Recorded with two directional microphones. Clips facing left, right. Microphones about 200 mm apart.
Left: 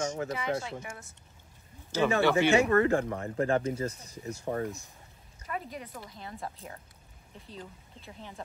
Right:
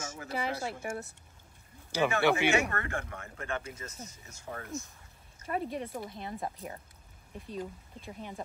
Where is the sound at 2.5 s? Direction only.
35° left (ahead or behind).